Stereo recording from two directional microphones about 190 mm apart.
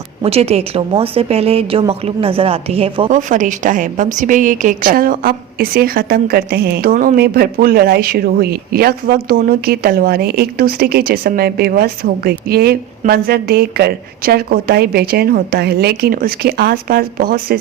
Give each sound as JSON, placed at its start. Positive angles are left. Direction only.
{"t": 0.2, "sound": "a woman's voice", "side_deg": -30}
{"t": 3.1, "sound": "a woman's voice", "side_deg": -40}